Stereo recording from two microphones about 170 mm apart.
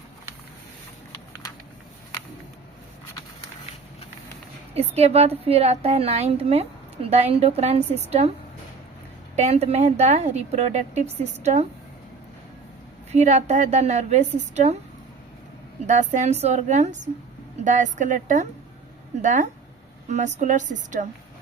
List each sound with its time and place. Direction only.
4.7 s a woman's voice: 40° right (ahead or behind)
9.3 s a woman's voice: 40° right (ahead or behind)
13.1 s a woman's voice: 45° right (ahead or behind)
15.9 s a woman's voice: 45° right (ahead or behind)